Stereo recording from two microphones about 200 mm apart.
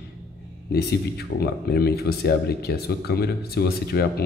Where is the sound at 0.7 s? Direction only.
55° left (ahead or behind).